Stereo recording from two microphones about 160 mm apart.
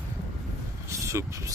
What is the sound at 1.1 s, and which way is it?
Speech, 20° right (ahead or behind).